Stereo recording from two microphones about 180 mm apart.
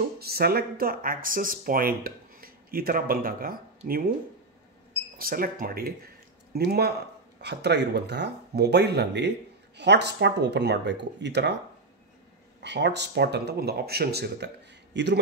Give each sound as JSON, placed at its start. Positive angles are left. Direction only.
{"t": 0.2, "sound": "speech", "side_deg": -60}
{"t": 5.2, "sound": "speech", "side_deg": -55}
{"t": 12.5, "sound": "speech", "side_deg": -70}